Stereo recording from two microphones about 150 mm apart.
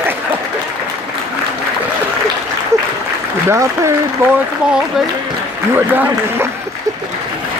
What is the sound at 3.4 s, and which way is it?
Speech, 20° right (ahead or behind).